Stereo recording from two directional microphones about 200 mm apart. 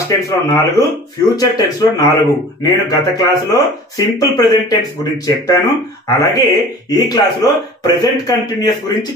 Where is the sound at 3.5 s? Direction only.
20° left (ahead or behind).